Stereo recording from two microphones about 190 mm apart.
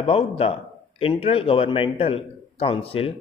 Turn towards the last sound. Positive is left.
turn(degrees=30)  # may be behind; listen again after turning